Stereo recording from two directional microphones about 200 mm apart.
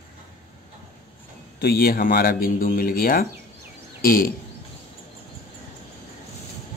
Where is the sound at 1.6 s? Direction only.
50° left (ahead or behind).